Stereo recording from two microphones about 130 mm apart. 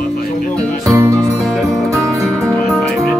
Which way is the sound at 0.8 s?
25° right (ahead or behind).